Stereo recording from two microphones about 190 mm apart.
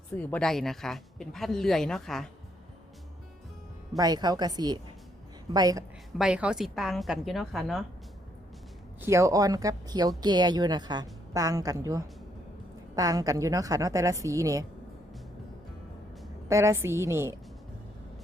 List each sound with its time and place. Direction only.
0.2 s speech: 5° left (ahead or behind)
3.9 s a woman's voice: 20° right (ahead or behind)
6.1 s speech: 5° right (ahead or behind)
9.0 s a woman's voice: 15° right (ahead or behind)
16.5 s a woman's voice: 15° right (ahead or behind)